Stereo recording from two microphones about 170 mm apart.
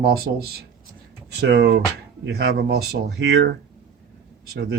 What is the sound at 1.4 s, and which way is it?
Speech, 75° right (ahead or behind).